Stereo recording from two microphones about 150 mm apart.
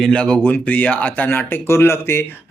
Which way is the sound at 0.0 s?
5° left (ahead or behind).